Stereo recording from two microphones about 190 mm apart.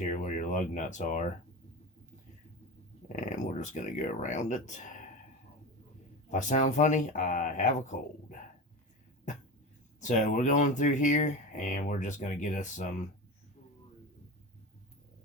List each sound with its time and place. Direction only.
0.0 s speech: 40° left (ahead or behind)
3.2 s speech: 40° left (ahead or behind)
6.3 s speech: 40° left (ahead or behind)
10.0 s speech: 40° left (ahead or behind)